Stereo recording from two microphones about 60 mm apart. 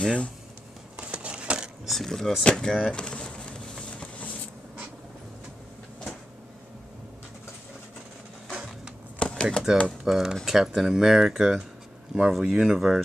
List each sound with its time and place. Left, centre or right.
0.0 s speech: centre
0.9 s a sound: centre
1.9 s speech: centre
2.9 s a sound: centre
9.2 s typewriter: centre
10.0 s speech: centre